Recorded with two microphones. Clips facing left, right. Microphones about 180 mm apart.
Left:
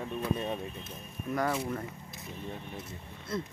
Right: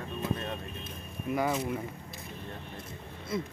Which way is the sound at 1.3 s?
10° right (ahead or behind).